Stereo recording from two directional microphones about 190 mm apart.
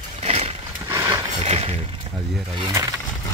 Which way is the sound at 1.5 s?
35° right (ahead or behind).